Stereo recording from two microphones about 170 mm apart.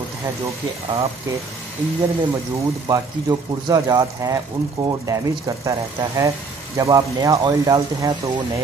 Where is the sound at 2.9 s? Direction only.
20° right (ahead or behind).